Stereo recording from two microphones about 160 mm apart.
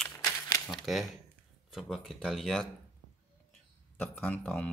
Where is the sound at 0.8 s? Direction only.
Centre (ahead or behind).